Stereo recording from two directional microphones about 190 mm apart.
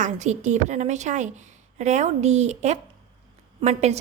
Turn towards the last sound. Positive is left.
turn(degrees=-35)  # may be behind; listen again after turning